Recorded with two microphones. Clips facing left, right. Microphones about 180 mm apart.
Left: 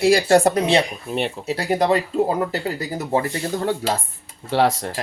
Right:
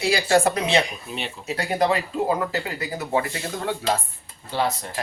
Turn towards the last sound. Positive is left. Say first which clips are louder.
# left 6 dB
turn(degrees=90)